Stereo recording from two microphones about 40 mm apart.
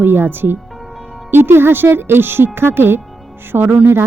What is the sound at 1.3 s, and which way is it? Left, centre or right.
A woman's voice, right.